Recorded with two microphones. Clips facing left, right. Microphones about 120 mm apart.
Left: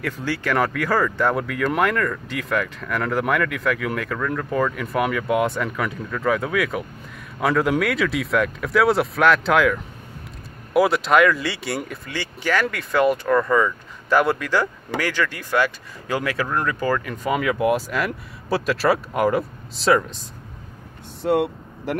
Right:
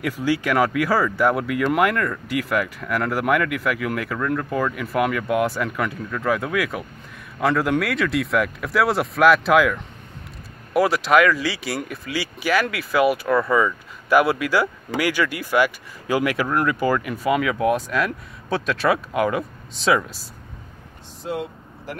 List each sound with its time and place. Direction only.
0.0 s speech: 10° right (ahead or behind)
21.2 s vehicle: 65° left (ahead or behind)